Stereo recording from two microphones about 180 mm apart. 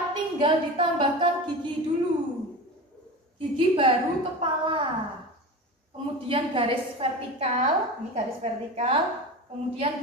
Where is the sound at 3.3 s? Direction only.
30° right (ahead or behind).